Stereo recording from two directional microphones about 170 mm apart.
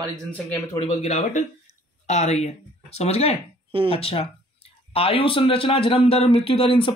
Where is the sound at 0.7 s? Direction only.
40° left (ahead or behind).